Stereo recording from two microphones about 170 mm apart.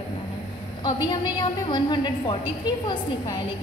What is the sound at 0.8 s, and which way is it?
A woman's voice, 25° left (ahead or behind).